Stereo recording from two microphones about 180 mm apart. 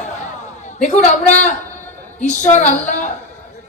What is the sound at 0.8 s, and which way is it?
Speech, 40° left (ahead or behind).